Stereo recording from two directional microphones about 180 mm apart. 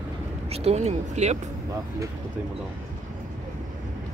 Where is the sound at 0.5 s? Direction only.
35° right (ahead or behind).